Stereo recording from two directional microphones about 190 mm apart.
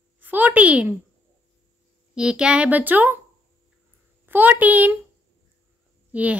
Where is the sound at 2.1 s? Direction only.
5° right (ahead or behind).